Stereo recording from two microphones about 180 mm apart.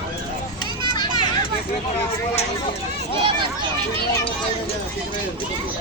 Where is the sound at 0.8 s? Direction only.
25° left (ahead or behind).